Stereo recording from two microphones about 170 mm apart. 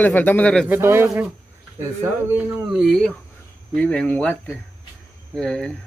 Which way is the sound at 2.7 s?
Centre (ahead or behind).